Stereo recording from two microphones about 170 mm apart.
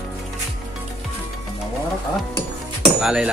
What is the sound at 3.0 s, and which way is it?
Speech, 5° right (ahead or behind).